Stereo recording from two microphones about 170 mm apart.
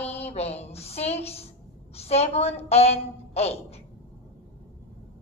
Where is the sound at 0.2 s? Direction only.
40° left (ahead or behind).